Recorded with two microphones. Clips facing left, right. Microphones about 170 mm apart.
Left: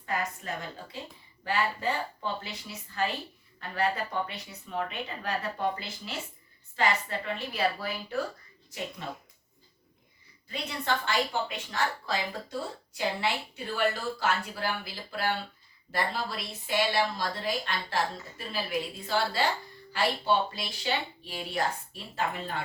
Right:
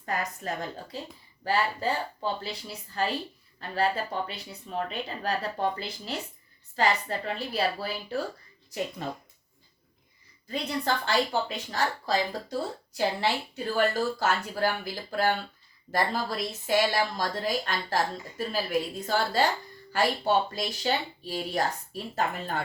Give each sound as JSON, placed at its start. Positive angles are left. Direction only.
{"t": 0.0, "sound": "a woman's voice", "side_deg": -40}
{"t": 6.7, "sound": "a woman's voice", "side_deg": -35}
{"t": 9.0, "sound": "a woman's voice", "side_deg": -40}
{"t": 10.5, "sound": "a woman's voice", "side_deg": -35}